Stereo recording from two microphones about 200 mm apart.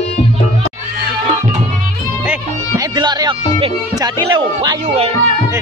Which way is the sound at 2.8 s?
20° right (ahead or behind).